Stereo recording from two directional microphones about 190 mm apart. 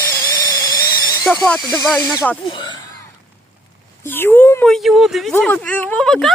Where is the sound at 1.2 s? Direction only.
Centre (ahead or behind).